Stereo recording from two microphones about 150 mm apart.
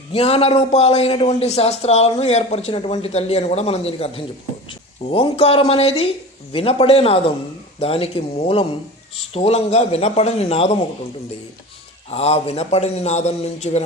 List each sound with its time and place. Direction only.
0.1 s a man's voice: 40° left (ahead or behind)
12.1 s a man's voice: 45° left (ahead or behind)